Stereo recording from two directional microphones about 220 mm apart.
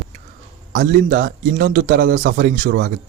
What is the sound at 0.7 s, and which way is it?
Speech, 45° right (ahead or behind).